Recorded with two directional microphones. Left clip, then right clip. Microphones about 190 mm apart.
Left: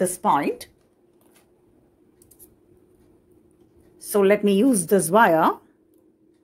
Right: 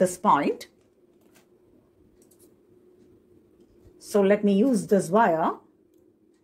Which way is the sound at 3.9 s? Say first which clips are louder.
Left 3 dB; 25° left (ahead or behind).